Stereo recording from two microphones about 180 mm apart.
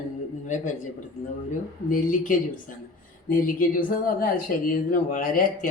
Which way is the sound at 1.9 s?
45° left (ahead or behind).